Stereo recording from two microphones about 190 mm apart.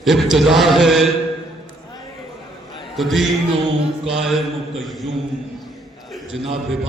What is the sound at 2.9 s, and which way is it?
A man's voice, centre (ahead or behind).